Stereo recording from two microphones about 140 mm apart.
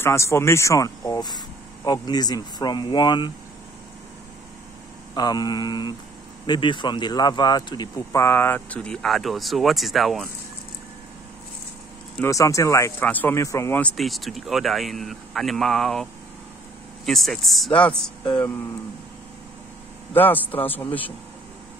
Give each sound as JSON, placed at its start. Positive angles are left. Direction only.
{"t": 0.0, "sound": "speech", "side_deg": 20}
{"t": 5.1, "sound": "speech", "side_deg": 30}
{"t": 12.3, "sound": "speech", "side_deg": 20}
{"t": 13.9, "sound": "speech", "side_deg": 0}
{"t": 20.1, "sound": "speech", "side_deg": 15}